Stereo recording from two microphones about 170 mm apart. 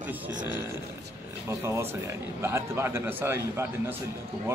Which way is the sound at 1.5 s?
15° right (ahead or behind).